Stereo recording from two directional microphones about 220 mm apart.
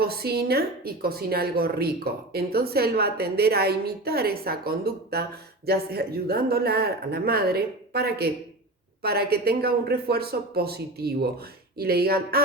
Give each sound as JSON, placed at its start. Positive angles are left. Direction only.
{"t": 0.0, "sound": "a woman's voice", "side_deg": -45}